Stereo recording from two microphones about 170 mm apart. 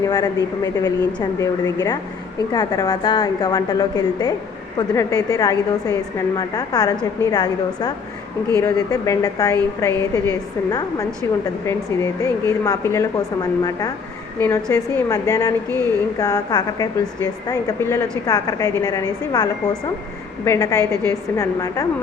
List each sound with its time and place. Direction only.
0.0 s a woman's voice: 20° left (ahead or behind)